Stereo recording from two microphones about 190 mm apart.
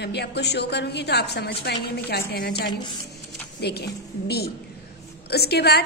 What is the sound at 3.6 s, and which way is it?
A woman's voice, 60° left (ahead or behind).